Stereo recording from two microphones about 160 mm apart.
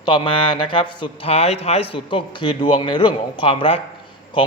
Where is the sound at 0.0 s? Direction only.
30° left (ahead or behind).